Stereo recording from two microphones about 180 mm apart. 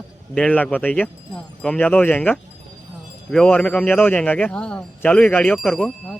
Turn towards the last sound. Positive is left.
turn(degrees=0)  # may be behind; listen again after turning